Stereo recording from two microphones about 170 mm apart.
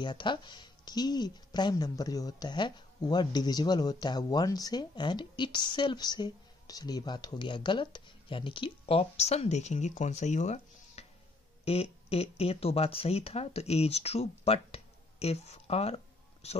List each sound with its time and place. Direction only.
0.0 s speech: 25° left (ahead or behind)